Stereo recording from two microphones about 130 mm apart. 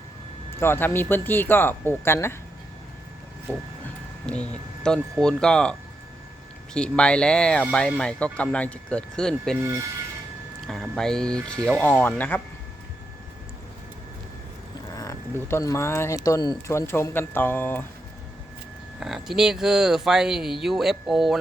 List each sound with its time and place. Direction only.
0.6 s speech: 20° left (ahead or behind)
3.5 s speech: 15° left (ahead or behind)
6.7 s speech: 5° left (ahead or behind)
9.6 s speech: 20° right (ahead or behind)
10.7 s speech: 5° left (ahead or behind)
14.9 s speech: 25° left (ahead or behind)
18.9 s speech: centre (ahead or behind)